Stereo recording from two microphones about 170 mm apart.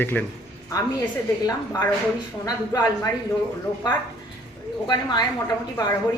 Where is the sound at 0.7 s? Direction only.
20° left (ahead or behind).